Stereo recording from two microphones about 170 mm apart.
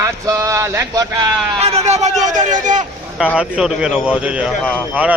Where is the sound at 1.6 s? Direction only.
40° right (ahead or behind).